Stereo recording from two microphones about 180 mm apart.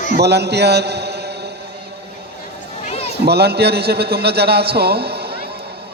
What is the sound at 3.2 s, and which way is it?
A man's voice, 65° right (ahead or behind).